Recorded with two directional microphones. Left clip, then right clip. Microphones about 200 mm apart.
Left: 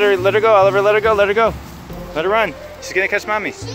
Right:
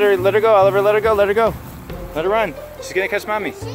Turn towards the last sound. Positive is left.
turn(degrees=-5)  # may be behind; listen again after turning